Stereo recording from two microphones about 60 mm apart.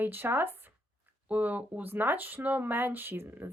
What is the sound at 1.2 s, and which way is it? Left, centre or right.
Speech, right.